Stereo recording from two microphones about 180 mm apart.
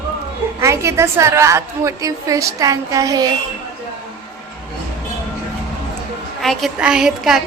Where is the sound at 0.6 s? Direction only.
15° right (ahead or behind).